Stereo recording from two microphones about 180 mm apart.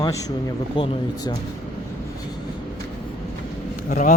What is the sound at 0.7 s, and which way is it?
Speech, 30° left (ahead or behind).